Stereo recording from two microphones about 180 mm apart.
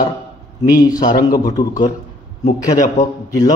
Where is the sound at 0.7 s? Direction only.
20° left (ahead or behind).